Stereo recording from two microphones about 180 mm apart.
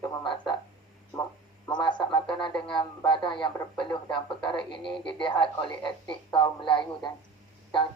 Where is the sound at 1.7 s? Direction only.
25° left (ahead or behind).